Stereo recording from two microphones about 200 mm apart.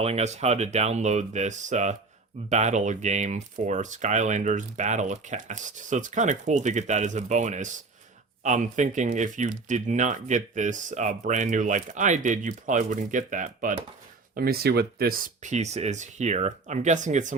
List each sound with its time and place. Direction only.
0.0 s speech: 30° right (ahead or behind)